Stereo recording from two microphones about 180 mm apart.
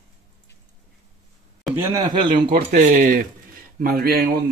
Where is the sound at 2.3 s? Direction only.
50° right (ahead or behind).